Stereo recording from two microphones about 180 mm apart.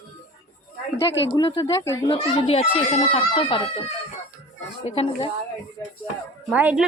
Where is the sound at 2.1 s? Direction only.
35° left (ahead or behind).